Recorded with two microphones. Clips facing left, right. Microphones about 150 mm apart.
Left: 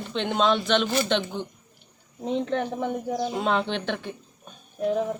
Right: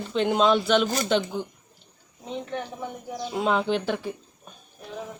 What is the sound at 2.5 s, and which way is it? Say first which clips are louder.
Speech: left 6 dB; 65° left (ahead or behind).